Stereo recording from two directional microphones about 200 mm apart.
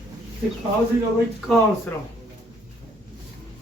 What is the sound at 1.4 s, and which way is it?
Speech, 5° left (ahead or behind).